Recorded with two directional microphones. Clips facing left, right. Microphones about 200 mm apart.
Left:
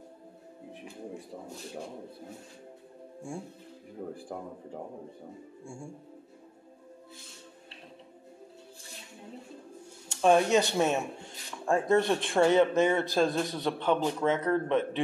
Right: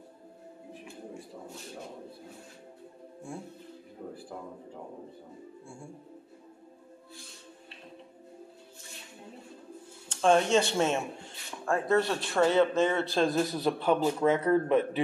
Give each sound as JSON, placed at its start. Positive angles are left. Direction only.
{"t": 10.2, "sound": "speech", "side_deg": 15}
{"t": 13.2, "sound": "a man's voice", "side_deg": -5}